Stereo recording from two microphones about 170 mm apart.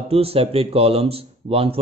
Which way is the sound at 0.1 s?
35° right (ahead or behind).